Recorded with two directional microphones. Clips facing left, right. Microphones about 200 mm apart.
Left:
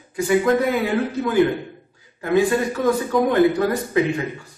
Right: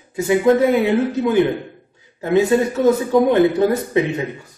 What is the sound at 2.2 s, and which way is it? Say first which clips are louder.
A woman's voice: right 3 dB; 25° right (ahead or behind).